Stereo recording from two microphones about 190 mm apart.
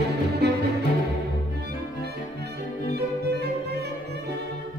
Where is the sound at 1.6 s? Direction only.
60° right (ahead or behind).